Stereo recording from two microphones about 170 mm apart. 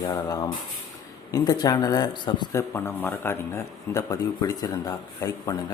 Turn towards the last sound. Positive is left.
turn(degrees=20)  # may be behind; listen again after turning